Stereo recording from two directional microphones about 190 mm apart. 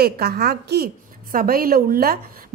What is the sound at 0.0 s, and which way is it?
A woman's voice, 55° right (ahead or behind).